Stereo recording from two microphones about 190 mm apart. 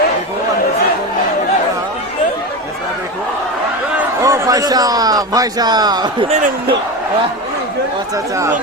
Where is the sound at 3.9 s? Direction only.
15° right (ahead or behind).